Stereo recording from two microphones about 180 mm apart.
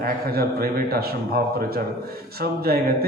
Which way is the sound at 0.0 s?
60° right (ahead or behind).